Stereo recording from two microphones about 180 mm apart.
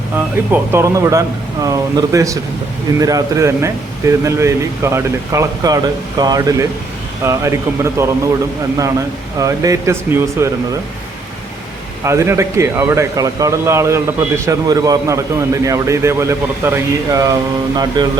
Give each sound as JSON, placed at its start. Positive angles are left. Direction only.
{"t": 0.5, "sound": "speech", "side_deg": -15}
{"t": 12.0, "sound": "speech", "side_deg": -15}